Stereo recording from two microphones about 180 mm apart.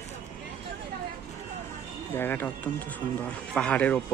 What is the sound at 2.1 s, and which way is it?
Speech, 10° left (ahead or behind).